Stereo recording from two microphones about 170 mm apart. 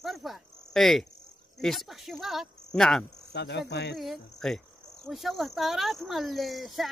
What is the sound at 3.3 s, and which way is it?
Speech, 85° left.